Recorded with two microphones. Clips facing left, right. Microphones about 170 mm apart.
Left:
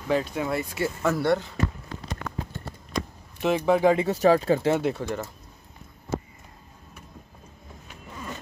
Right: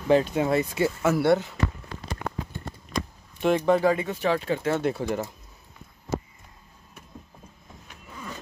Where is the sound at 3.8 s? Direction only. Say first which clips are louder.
Left 4 dB; 30° left (ahead or behind).